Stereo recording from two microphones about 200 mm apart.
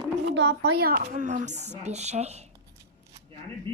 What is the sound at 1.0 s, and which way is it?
Speech, 40° right (ahead or behind).